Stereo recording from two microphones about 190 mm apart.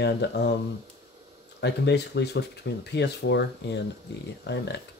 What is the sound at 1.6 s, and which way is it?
Speech, 60° left (ahead or behind).